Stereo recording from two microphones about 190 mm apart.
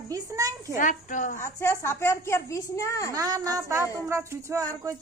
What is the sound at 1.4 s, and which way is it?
A woman's voice, 15° left (ahead or behind).